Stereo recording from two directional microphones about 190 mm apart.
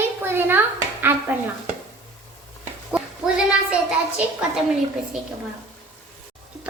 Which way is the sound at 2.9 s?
5° right (ahead or behind).